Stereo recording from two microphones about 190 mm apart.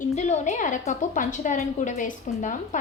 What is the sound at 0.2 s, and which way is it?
A woman's voice, 35° left (ahead or behind).